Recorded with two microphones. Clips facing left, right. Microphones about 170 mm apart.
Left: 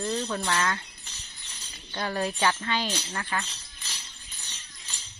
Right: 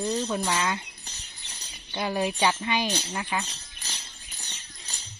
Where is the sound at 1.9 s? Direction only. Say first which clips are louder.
Right 2 dB; 15° right (ahead or behind).